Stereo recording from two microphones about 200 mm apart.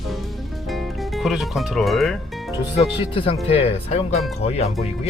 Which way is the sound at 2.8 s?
30° left (ahead or behind).